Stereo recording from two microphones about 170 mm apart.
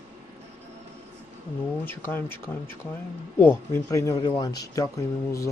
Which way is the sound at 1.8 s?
10° left (ahead or behind).